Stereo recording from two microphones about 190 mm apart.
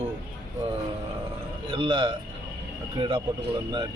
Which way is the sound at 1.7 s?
25° right (ahead or behind).